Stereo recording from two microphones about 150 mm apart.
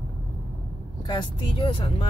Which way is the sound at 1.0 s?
30° left (ahead or behind).